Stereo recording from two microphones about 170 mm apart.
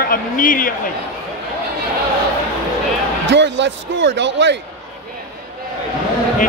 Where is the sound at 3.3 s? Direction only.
90° right.